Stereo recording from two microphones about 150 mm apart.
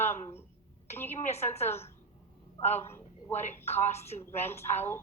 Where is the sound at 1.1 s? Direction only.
45° left (ahead or behind).